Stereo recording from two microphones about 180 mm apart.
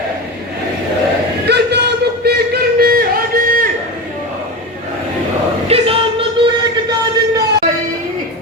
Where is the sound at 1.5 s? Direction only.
65° right (ahead or behind); by 3.7 s 50° right (ahead or behind).